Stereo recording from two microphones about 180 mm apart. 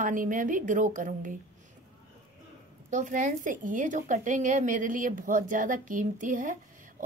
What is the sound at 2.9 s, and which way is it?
A woman's voice, 45° right (ahead or behind).